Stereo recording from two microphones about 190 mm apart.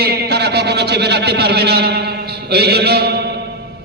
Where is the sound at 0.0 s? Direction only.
55° right (ahead or behind).